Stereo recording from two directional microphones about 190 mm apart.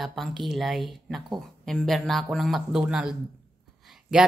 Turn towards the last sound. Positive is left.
turn(degrees=0)  # may be behind; listen again after turning